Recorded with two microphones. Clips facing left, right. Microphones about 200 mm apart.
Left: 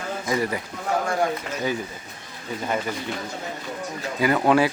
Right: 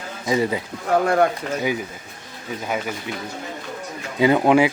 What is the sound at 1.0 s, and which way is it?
Speech, 60° right (ahead or behind).